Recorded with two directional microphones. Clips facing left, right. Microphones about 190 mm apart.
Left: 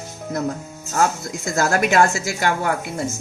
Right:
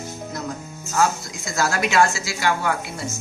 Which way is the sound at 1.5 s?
50° left (ahead or behind).